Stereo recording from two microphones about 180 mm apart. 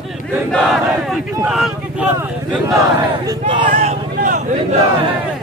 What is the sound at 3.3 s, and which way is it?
Speech, 25° right (ahead or behind).